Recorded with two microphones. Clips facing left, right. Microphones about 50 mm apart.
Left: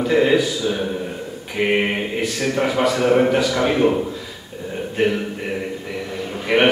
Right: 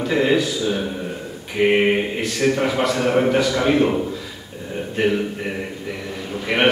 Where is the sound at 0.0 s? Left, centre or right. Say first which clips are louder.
Left 2 dB; centre.